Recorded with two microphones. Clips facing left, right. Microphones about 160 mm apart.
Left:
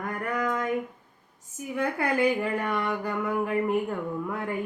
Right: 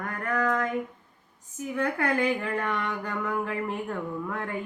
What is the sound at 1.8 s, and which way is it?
Speech, 10° left (ahead or behind).